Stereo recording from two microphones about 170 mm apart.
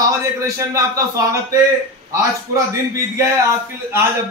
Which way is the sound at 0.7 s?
20° right (ahead or behind).